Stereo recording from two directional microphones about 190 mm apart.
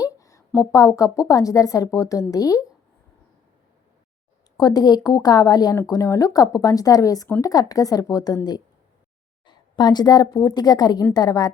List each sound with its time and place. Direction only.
0.0 s a woman's voice: 15° left (ahead or behind)
4.5 s a woman's voice: 20° left (ahead or behind)